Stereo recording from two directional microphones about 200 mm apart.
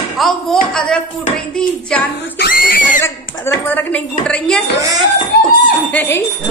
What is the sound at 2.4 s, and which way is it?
Speech, 45° left (ahead or behind).